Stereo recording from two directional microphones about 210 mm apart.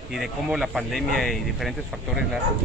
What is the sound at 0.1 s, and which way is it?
Speech, centre (ahead or behind).